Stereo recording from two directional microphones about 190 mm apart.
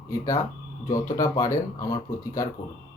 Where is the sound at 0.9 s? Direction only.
15° left (ahead or behind).